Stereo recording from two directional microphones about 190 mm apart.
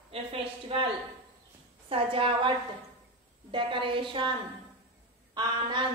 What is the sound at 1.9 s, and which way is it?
A woman's voice, 30° right (ahead or behind).